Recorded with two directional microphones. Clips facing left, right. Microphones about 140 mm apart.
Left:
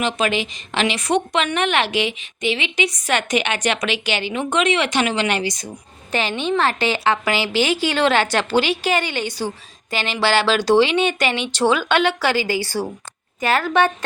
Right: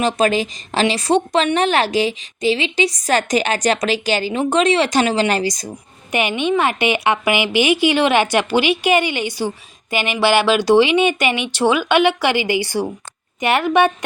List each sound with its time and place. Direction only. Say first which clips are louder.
0.0 s a woman's voice: right 4 dB; 40° right (ahead or behind)
6.1 s a woman's voice: right 3 dB; 15° right (ahead or behind)